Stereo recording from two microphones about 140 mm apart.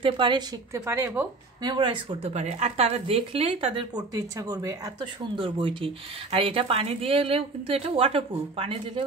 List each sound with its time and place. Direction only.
0.0 s speech: 35° right (ahead or behind)
0.8 s speech: 15° right (ahead or behind)
1.6 s speech: 30° right (ahead or behind)
2.2 s a woman's voice: 50° right (ahead or behind)
3.9 s a woman's voice: 25° right (ahead or behind)